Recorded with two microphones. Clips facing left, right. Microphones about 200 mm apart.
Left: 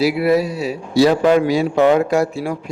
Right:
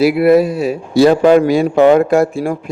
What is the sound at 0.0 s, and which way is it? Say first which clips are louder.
A man's voice: right 6 dB; 55° right (ahead or behind).